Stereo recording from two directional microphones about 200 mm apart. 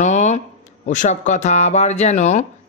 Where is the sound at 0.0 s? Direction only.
35° left (ahead or behind).